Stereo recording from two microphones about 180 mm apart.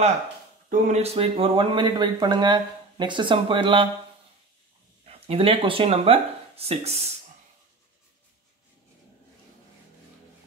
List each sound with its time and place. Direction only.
0.7 s speech: 40° right (ahead or behind)
5.0 s speech: 35° right (ahead or behind)